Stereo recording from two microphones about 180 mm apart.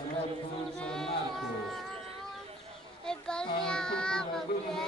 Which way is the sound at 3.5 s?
5° left (ahead or behind).